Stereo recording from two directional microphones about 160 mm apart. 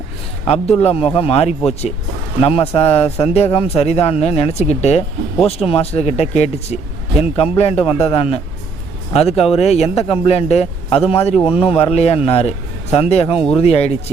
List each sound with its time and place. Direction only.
0.4 s speech: 40° left (ahead or behind)